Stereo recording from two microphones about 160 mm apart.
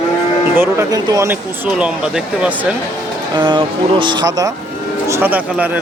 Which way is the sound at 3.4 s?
30° right (ahead or behind).